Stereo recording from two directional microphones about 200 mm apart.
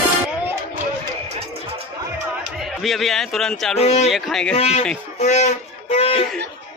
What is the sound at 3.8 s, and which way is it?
Speech, 30° left (ahead or behind).